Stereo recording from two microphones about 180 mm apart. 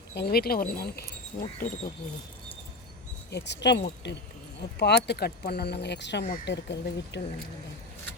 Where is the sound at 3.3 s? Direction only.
70° left (ahead or behind).